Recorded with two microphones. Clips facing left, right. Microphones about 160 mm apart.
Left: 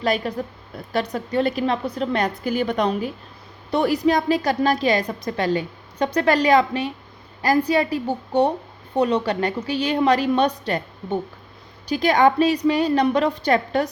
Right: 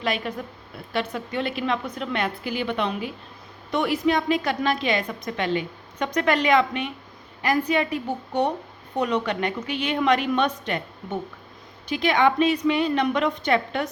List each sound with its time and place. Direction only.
0.0 s a woman's voice: 35° left (ahead or behind)